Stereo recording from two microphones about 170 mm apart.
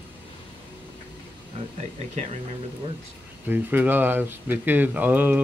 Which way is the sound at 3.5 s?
10° right (ahead or behind).